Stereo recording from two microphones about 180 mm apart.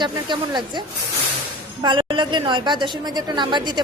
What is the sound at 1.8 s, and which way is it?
A woman's voice, 25° right (ahead or behind).